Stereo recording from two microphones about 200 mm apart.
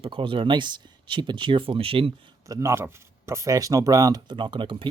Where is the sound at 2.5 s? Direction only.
15° right (ahead or behind).